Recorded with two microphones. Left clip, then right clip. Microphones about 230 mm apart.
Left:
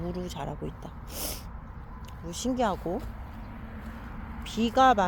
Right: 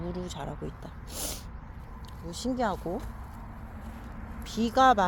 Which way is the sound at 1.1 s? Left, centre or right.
Centre.